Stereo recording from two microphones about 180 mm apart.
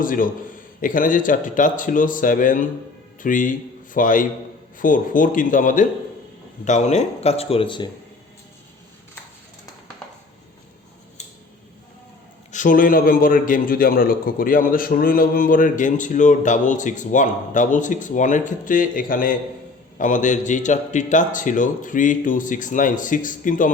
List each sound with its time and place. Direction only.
0.0 s a man's voice: 50° left (ahead or behind); by 7.9 s 30° left (ahead or behind)
12.5 s a man's voice: 45° left (ahead or behind)